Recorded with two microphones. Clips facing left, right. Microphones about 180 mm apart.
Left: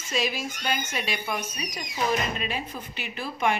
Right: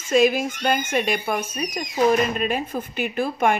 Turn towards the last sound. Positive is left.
turn(degrees=-50)  # may be behind; listen again after turning